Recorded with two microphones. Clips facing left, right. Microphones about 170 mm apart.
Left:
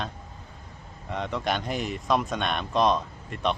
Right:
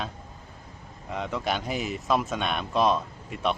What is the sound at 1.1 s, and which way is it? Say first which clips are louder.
Speech: left 1 dB; centre (ahead or behind).